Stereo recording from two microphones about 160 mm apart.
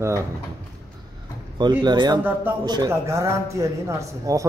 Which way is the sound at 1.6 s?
30° right (ahead or behind).